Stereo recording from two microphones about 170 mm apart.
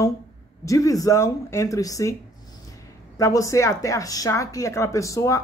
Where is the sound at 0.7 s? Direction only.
20° left (ahead or behind).